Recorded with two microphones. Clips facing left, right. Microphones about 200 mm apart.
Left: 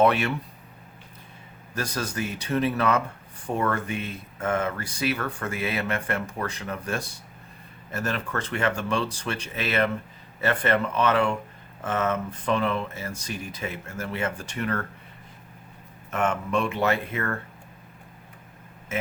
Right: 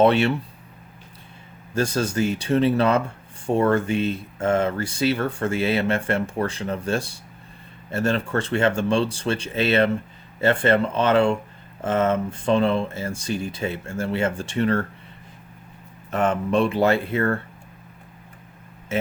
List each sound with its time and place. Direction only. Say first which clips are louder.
0.0 s speech: right 4 dB; 30° right (ahead or behind)
1.7 s speech: right 7 dB; 30° right (ahead or behind)
16.0 s speech: right 4 dB; 35° right (ahead or behind)